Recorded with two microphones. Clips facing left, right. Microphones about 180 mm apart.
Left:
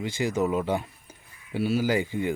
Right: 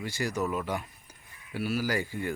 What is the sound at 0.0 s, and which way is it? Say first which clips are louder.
A man's voice: left 5 dB; 20° left (ahead or behind).